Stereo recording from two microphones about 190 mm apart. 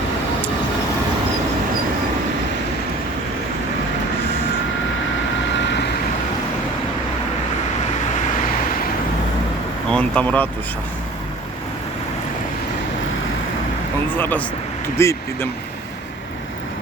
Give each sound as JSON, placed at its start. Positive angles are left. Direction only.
{"t": 5.5, "sound": "vehicle", "side_deg": 70}
{"t": 9.9, "sound": "speech", "side_deg": 10}
{"t": 14.2, "sound": "speech", "side_deg": 10}